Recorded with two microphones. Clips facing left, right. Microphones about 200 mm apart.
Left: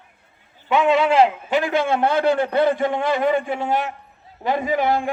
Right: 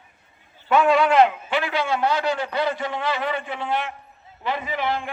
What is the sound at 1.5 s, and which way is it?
A man's voice, 45° left (ahead or behind).